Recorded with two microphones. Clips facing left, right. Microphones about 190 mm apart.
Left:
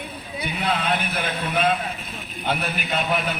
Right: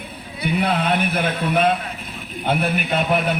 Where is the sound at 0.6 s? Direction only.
60° right (ahead or behind).